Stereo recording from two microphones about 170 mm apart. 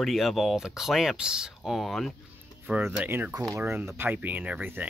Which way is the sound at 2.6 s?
10° right (ahead or behind).